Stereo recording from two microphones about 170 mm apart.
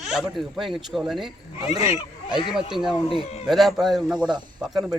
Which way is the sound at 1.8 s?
35° left (ahead or behind).